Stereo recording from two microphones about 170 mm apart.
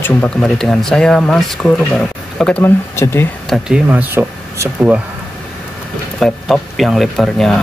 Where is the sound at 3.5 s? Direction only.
5° right (ahead or behind).